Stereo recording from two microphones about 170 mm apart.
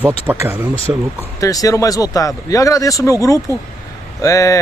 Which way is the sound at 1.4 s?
20° left (ahead or behind).